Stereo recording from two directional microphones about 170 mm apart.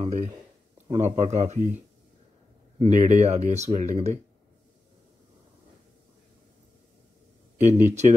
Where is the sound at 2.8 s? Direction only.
45° right (ahead or behind).